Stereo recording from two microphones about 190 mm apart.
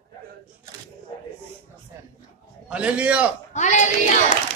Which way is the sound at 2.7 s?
5° right (ahead or behind).